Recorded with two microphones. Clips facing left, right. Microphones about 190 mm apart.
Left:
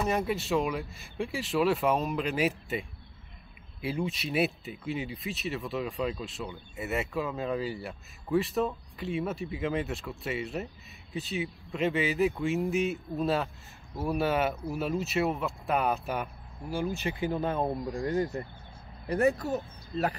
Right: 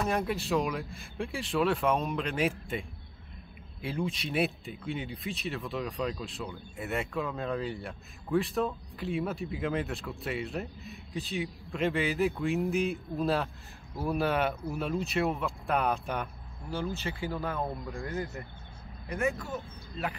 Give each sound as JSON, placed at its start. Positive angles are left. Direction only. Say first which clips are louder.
{"t": 0.0, "sound": "speech", "louder": "left 1 dB", "side_deg": 0}
{"t": 16.7, "sound": "speech", "louder": "left 3 dB", "side_deg": 15}